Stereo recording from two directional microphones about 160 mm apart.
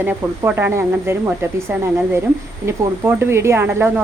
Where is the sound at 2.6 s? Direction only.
15° right (ahead or behind).